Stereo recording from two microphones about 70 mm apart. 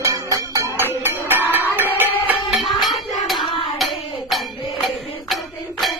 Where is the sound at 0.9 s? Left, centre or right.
Right.